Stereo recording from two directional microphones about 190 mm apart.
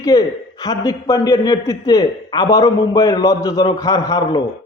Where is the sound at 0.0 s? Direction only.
20° left (ahead or behind).